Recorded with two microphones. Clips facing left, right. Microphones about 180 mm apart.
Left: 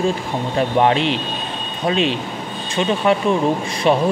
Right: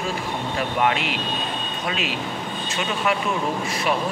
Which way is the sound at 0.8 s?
30° left (ahead or behind).